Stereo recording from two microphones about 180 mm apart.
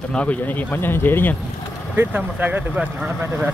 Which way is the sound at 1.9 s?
10° right (ahead or behind).